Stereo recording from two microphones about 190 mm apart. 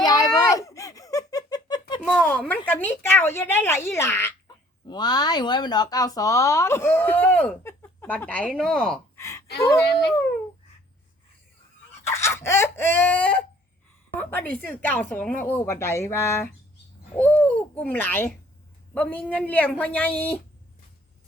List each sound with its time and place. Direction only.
0.0 s giggle: 20° left (ahead or behind)
2.0 s speech: 5° left (ahead or behind)
9.8 s speech: 60° left (ahead or behind)
12.1 s a sound: 15° left (ahead or behind)
14.1 s speech: 10° left (ahead or behind)